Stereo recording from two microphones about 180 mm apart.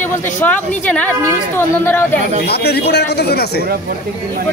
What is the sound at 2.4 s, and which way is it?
A man's voice, 60° left (ahead or behind).